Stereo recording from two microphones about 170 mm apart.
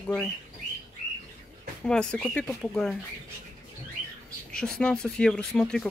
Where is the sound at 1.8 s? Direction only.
5° left (ahead or behind).